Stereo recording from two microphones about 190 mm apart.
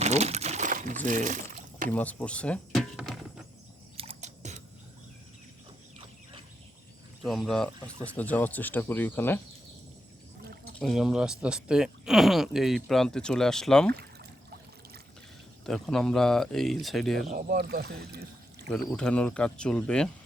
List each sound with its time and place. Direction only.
0.0 s crumpling: 35° right (ahead or behind)
1.0 s speech: 40° right (ahead or behind)
1.9 s speech: 10° left (ahead or behind)
3.9 s a sound: 35° right (ahead or behind)
7.2 s speech: centre (ahead or behind)
10.8 s speech: centre (ahead or behind)
15.6 s speech: 5° left (ahead or behind)
17.2 s speech: 45° right (ahead or behind)
18.7 s speech: 5° left (ahead or behind)